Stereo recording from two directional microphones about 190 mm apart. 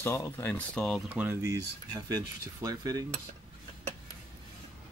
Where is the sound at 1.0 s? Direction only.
10° right (ahead or behind).